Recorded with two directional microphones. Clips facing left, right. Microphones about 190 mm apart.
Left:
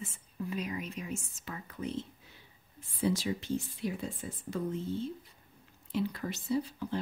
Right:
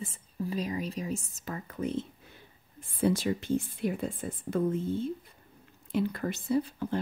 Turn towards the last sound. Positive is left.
turn(degrees=-55)  # may be behind; listen again after turning